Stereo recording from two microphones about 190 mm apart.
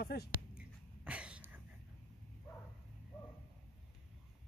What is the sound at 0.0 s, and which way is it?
Speech, 55° left (ahead or behind).